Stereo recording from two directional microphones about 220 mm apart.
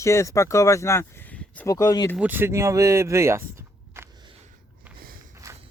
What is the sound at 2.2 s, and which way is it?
Speech, 10° right (ahead or behind).